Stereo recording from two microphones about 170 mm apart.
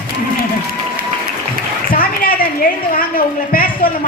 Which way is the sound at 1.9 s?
60° left (ahead or behind).